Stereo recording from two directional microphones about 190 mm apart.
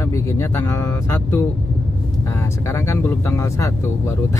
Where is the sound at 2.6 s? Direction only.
10° left (ahead or behind).